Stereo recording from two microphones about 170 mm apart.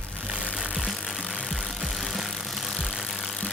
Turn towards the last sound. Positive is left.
turn(degrees=0)  # may be behind; listen again after turning